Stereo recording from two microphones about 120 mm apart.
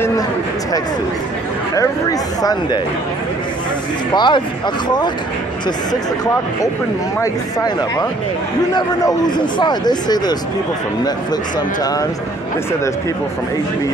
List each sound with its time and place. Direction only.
1.8 s speech: 30° left (ahead or behind)
4.1 s speech: 40° left (ahead or behind)
7.2 s speech: 30° left (ahead or behind)